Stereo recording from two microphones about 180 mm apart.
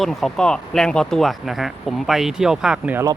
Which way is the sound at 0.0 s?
Centre (ahead or behind).